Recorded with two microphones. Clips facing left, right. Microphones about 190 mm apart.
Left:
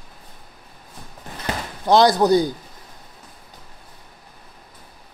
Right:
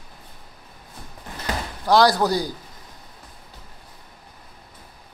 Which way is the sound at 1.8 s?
20° left (ahead or behind).